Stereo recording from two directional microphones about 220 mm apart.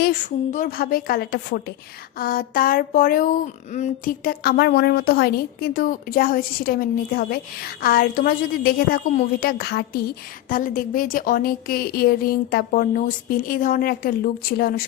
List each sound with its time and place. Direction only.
0.0 s a woman's voice: 35° left (ahead or behind)